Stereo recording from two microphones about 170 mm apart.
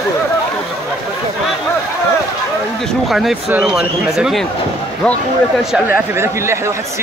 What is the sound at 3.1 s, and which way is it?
Speech, centre (ahead or behind).